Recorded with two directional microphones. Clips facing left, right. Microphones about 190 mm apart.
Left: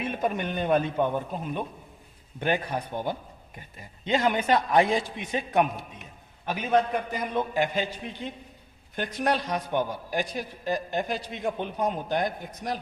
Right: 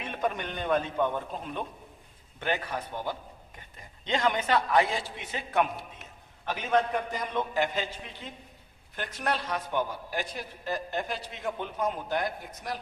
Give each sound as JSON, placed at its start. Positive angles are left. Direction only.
{"t": 0.0, "sound": "a man's voice", "side_deg": 10}